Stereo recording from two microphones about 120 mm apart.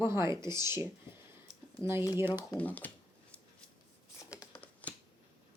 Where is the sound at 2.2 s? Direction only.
20° right (ahead or behind).